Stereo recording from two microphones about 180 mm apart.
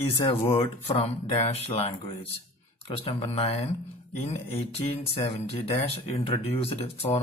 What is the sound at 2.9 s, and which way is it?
Speech, 30° left (ahead or behind).